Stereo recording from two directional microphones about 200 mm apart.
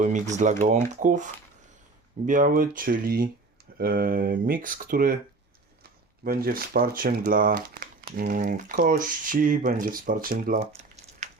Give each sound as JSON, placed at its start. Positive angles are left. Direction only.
{"t": 0.0, "sound": "speech", "side_deg": -35}
{"t": 6.2, "sound": "speech", "side_deg": -50}